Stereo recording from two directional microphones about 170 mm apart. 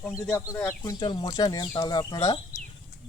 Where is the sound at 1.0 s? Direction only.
25° left (ahead or behind).